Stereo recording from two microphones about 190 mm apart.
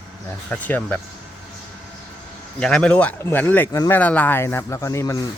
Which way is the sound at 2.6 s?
5° left (ahead or behind).